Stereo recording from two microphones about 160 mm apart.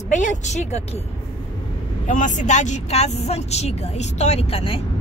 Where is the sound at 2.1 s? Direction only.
50° left (ahead or behind).